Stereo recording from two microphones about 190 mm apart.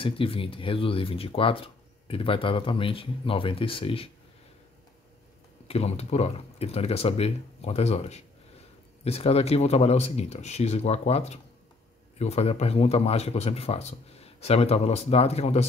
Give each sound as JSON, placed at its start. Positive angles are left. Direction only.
{"t": 0.0, "sound": "speech", "side_deg": 30}
{"t": 5.7, "sound": "speech", "side_deg": 35}